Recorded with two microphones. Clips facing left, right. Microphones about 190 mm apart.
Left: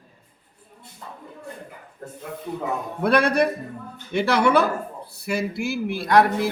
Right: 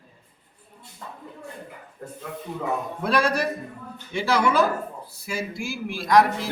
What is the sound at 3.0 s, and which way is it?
Speech, 60° left (ahead or behind).